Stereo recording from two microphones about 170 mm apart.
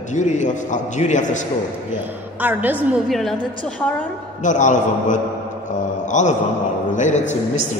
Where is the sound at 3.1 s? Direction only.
Centre (ahead or behind).